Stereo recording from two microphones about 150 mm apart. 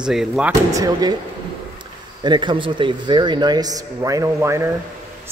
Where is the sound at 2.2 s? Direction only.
30° right (ahead or behind).